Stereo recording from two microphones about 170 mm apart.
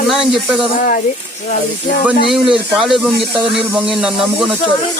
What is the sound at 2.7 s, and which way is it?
Speech, centre (ahead or behind).